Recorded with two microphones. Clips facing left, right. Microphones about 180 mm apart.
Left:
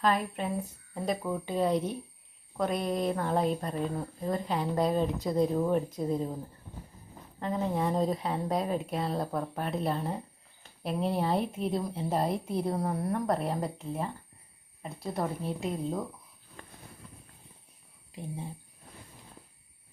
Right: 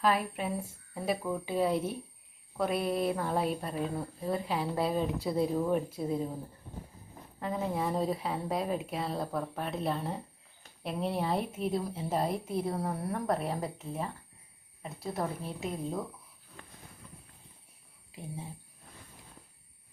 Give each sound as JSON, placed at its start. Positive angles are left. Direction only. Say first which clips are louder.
{"t": 0.0, "sound": "speech", "louder": "left 1 dB", "side_deg": -5}
{"t": 7.3, "sound": "speech", "louder": "left 2 dB", "side_deg": -5}
{"t": 16.6, "sound": "train", "louder": "left 2 dB", "side_deg": 40}